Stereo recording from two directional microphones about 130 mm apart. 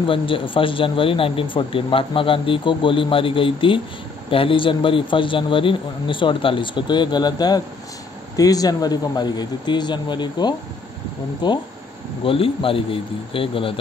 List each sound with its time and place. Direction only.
0.0 s a man's voice: 40° left (ahead or behind)